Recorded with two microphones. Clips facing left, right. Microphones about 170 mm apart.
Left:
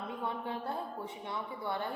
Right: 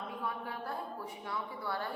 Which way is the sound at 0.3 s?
25° left (ahead or behind).